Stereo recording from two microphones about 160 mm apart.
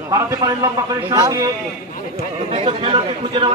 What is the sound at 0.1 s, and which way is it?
Speech, 20° right (ahead or behind).